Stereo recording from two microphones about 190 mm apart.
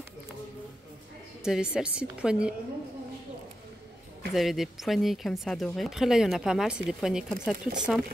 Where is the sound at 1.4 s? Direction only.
5° right (ahead or behind).